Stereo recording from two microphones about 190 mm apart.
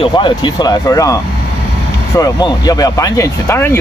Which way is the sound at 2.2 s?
20° left (ahead or behind).